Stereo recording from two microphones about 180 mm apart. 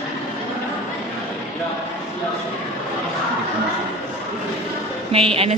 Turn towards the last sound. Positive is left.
turn(degrees=-30)  # may be behind; listen again after turning